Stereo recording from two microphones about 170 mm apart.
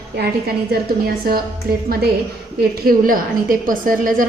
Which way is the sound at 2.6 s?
60° right (ahead or behind).